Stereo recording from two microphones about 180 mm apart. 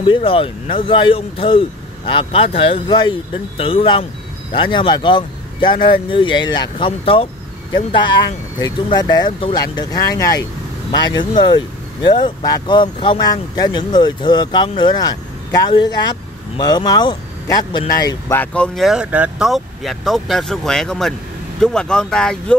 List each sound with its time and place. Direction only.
0.0 s speech: 30° left (ahead or behind)
18.0 s speech: 10° left (ahead or behind)